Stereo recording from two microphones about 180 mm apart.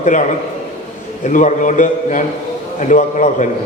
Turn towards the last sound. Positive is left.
turn(degrees=40)  # may be behind; listen again after turning